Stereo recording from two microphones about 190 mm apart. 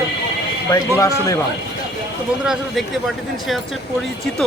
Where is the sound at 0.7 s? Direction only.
15° left (ahead or behind).